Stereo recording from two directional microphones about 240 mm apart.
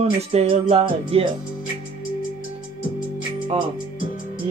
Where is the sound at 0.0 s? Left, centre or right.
Right.